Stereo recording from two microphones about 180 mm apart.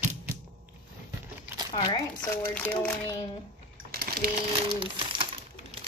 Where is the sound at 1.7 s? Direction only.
25° left (ahead or behind).